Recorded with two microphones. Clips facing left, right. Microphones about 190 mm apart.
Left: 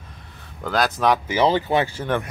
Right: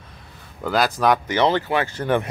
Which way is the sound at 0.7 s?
Centre (ahead or behind).